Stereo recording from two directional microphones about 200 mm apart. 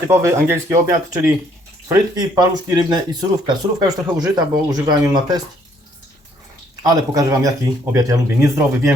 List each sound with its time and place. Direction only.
0.1 s speech: 15° right (ahead or behind)
6.8 s speech: 15° right (ahead or behind)